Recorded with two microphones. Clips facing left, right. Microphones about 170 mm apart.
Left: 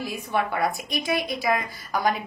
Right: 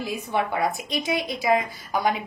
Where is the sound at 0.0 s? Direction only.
15° right (ahead or behind).